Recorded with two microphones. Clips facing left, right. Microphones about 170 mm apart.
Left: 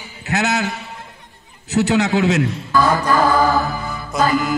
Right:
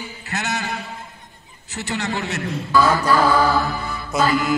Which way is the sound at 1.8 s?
85° left.